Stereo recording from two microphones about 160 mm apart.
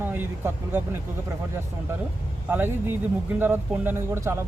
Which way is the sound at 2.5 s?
15° right (ahead or behind).